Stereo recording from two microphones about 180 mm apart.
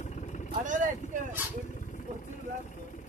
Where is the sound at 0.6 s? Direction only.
45° right (ahead or behind).